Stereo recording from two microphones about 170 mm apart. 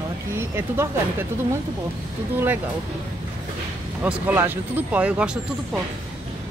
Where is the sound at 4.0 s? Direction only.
10° right (ahead or behind).